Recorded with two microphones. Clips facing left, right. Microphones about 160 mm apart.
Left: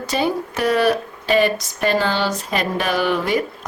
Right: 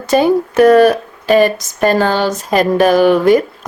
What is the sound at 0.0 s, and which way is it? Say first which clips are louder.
Speech: right 9 dB; 50° right (ahead or behind).